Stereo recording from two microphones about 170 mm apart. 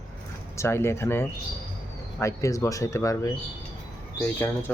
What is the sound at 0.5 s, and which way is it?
Speech, 15° left (ahead or behind).